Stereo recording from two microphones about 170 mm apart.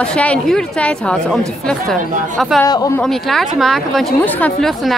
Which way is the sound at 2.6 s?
20° left (ahead or behind).